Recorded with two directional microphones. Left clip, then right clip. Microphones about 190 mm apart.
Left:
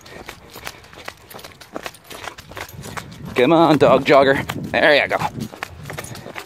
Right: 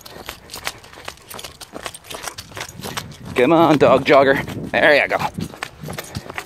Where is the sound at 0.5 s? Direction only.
35° right (ahead or behind).